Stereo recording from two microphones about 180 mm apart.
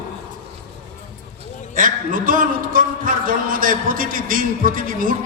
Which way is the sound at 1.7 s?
50° right (ahead or behind).